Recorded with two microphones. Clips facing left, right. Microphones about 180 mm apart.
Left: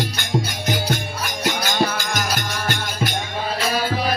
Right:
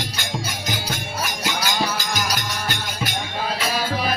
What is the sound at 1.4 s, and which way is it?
Music, 55° left (ahead or behind).